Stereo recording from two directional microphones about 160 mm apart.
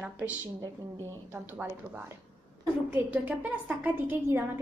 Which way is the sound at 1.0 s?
15° right (ahead or behind).